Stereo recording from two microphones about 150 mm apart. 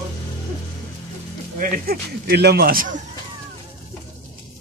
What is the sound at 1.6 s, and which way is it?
A man's voice, 90° right.